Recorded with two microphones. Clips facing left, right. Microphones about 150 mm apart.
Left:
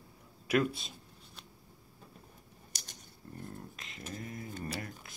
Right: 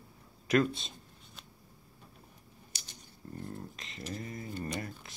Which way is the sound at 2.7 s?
45° left (ahead or behind).